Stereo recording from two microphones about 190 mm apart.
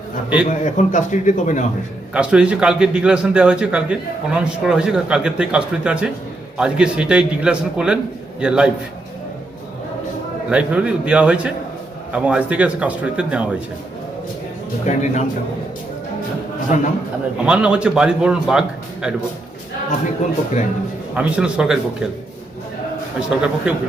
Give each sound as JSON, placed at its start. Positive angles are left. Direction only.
{"t": 0.6, "sound": "a man's voice", "side_deg": 40}
{"t": 2.1, "sound": "a man's voice", "side_deg": -5}
{"t": 10.5, "sound": "a man's voice", "side_deg": -5}
{"t": 14.8, "sound": "a man's voice", "side_deg": 40}
{"t": 16.7, "sound": "a man's voice", "side_deg": 40}
{"t": 17.4, "sound": "a man's voice", "side_deg": -5}
{"t": 20.2, "sound": "a man's voice", "side_deg": 40}
{"t": 21.2, "sound": "a man's voice", "side_deg": -5}
{"t": 23.3, "sound": "a man's voice", "side_deg": -5}